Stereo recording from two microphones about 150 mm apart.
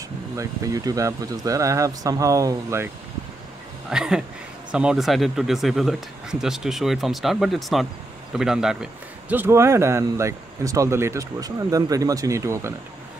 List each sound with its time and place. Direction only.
0.4 s a man's voice: 25° right (ahead or behind)
3.9 s a man's voice: 5° right (ahead or behind)